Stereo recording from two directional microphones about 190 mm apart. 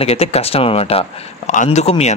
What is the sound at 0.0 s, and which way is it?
Speech, 30° left (ahead or behind).